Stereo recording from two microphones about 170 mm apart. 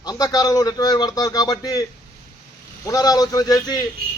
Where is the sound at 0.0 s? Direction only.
20° left (ahead or behind).